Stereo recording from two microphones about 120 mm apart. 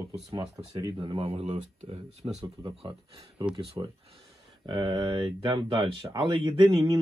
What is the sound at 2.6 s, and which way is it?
Speech, 40° right (ahead or behind).